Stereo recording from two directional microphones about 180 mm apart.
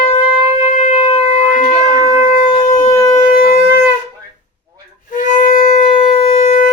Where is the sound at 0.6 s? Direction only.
40° left (ahead or behind).